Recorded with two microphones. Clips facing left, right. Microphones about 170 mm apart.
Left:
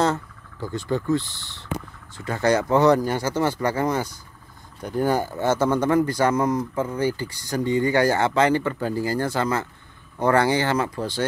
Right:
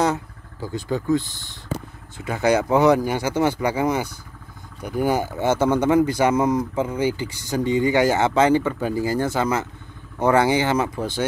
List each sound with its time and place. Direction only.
0.0 s speech: 10° right (ahead or behind)